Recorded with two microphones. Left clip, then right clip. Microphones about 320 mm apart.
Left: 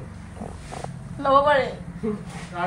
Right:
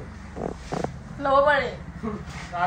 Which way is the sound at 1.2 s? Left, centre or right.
Centre.